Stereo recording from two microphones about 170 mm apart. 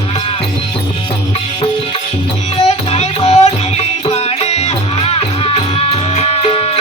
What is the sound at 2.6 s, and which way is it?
Music, 40° left (ahead or behind).